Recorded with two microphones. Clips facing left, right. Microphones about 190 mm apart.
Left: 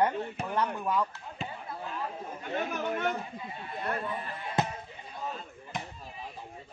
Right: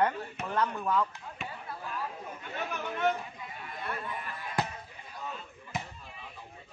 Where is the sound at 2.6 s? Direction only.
45° left (ahead or behind).